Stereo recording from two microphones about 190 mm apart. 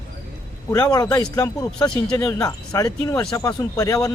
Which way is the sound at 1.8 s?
5° left (ahead or behind).